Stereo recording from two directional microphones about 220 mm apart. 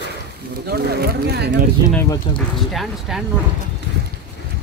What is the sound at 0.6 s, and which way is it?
Speech, 45° right (ahead or behind).